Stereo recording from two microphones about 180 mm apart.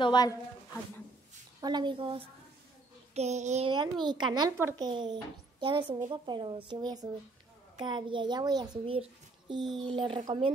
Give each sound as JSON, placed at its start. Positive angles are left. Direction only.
{"t": 0.0, "sound": "a woman's voice", "side_deg": 20}
{"t": 1.6, "sound": "a child's voice", "side_deg": -25}
{"t": 3.2, "sound": "a child's voice", "side_deg": -40}
{"t": 3.7, "sound": "a child's voice", "side_deg": -25}